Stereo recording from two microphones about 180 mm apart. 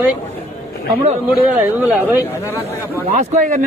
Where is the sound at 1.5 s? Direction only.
10° right (ahead or behind).